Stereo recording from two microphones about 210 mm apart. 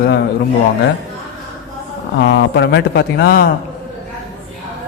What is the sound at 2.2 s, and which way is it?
A man's voice, 55° left (ahead or behind).